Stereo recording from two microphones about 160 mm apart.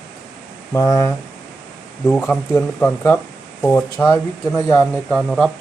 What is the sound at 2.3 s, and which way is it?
Speech, 10° left (ahead or behind).